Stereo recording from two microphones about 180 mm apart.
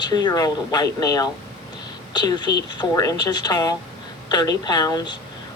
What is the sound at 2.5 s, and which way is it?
Speech, 70° left (ahead or behind).